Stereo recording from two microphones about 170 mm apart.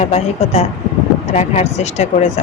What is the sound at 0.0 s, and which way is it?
Speech, 40° left (ahead or behind).